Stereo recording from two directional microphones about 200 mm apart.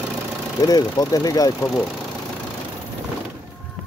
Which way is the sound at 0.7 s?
20° left (ahead or behind).